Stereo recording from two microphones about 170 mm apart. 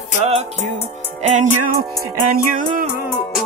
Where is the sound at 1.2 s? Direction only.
45° right (ahead or behind).